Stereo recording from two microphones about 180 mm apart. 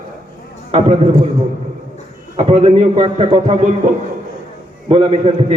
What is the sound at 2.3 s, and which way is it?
A man's voice, 35° right (ahead or behind).